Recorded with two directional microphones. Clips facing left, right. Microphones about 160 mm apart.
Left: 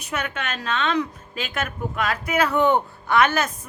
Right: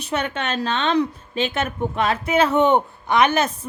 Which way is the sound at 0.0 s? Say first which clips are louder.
Right 4 dB; 30° right (ahead or behind).